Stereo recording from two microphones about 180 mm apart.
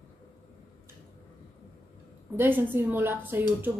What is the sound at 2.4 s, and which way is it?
A woman's voice, 10° right (ahead or behind).